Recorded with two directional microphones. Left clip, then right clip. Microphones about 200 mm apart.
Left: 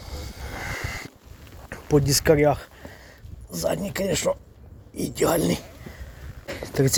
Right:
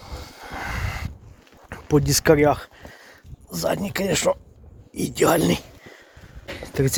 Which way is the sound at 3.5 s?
30° right (ahead or behind).